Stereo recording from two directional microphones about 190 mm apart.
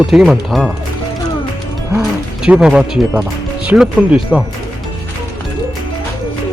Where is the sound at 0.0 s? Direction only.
5° right (ahead or behind).